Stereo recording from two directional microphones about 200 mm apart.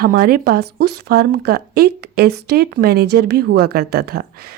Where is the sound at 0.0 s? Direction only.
50° right (ahead or behind).